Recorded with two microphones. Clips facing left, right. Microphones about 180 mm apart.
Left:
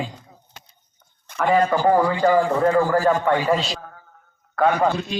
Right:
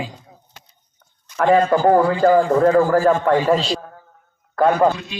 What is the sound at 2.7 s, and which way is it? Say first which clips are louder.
A man's voice: right 3 dB; 30° right (ahead or behind).